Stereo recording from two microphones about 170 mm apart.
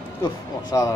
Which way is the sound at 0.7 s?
25° left (ahead or behind).